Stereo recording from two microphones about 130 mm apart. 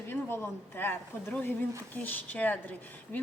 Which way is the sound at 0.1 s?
15° left (ahead or behind).